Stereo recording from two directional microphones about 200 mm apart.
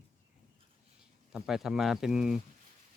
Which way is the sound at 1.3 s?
Centre (ahead or behind).